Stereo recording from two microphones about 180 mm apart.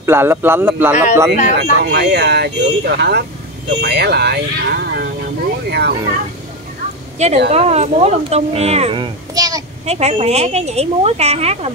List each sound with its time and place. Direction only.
0.0 s speech: 15° right (ahead or behind)
1.5 s speech: 65° right (ahead or behind)
7.2 s speech: 40° right (ahead or behind); by 9.6 s 20° right (ahead or behind)
9.8 s speech: 35° right (ahead or behind)